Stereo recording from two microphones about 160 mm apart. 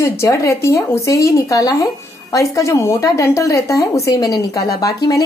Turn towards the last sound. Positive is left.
turn(degrees=25)  # may be behind; listen again after turning